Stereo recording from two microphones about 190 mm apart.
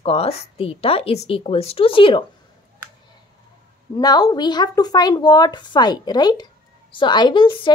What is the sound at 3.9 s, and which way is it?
A woman's voice, 20° left (ahead or behind).